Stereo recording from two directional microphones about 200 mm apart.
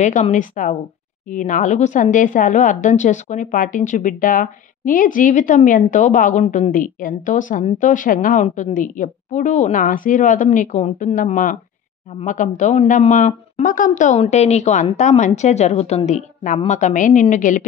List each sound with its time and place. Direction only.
0.0 s a woman's voice: 40° left (ahead or behind)